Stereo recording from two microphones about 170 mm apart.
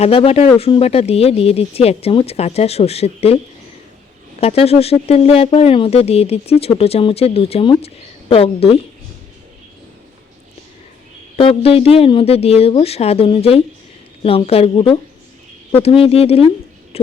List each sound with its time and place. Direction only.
0.0 s speech: 35° left (ahead or behind)
4.4 s speech: 35° left (ahead or behind)
11.3 s speech: 35° left (ahead or behind)